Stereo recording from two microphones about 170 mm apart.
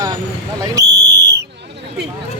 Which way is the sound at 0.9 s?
80° right.